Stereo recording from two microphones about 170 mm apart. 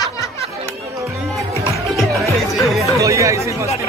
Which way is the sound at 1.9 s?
Centre (ahead or behind).